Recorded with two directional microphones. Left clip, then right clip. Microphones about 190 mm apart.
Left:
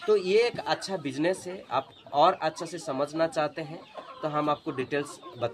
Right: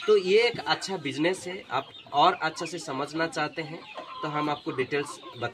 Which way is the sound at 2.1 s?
35° left (ahead or behind).